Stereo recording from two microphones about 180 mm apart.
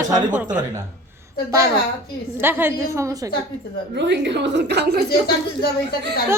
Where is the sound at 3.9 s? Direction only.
75° right (ahead or behind).